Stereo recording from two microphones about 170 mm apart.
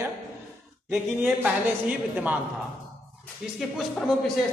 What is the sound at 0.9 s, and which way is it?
Speech, 5° right (ahead or behind).